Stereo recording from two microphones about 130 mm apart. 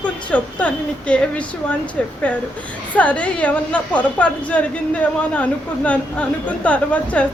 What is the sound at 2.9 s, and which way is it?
A woman's voice, 10° left (ahead or behind).